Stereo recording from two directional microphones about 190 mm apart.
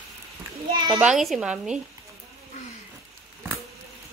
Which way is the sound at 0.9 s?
Centre (ahead or behind).